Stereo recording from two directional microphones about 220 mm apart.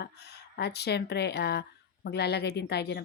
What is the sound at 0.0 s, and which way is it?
A woman's voice, 50° left (ahead or behind).